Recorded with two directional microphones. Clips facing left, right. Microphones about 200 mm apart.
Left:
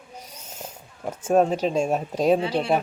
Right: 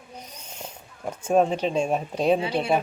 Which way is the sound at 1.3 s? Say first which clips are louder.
Left 1 dB; 5° left (ahead or behind).